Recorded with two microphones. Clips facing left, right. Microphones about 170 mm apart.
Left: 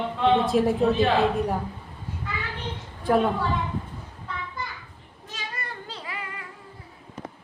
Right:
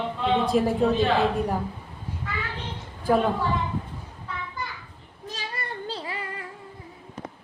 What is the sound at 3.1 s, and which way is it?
Speech, centre (ahead or behind).